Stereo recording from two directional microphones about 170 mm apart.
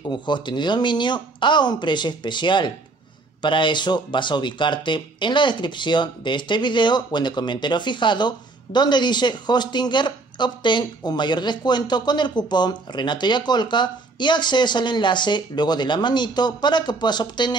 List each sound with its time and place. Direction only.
0.1 s speech: 25° left (ahead or behind)